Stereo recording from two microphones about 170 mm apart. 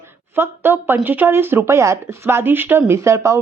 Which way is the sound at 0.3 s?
10° right (ahead or behind).